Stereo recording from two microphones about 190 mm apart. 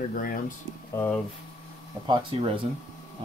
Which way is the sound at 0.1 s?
45° left (ahead or behind).